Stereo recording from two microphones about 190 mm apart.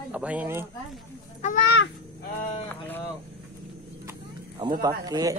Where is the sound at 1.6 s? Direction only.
65° left (ahead or behind).